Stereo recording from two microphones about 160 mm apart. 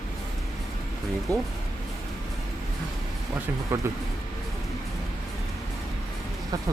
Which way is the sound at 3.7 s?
15° right (ahead or behind).